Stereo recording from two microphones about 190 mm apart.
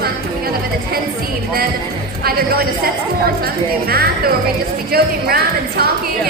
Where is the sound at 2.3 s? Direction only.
55° right (ahead or behind).